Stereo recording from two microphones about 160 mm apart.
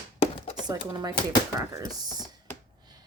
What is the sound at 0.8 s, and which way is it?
Speech, 25° right (ahead or behind).